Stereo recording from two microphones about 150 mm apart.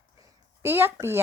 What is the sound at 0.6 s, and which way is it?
Speech, 15° right (ahead or behind).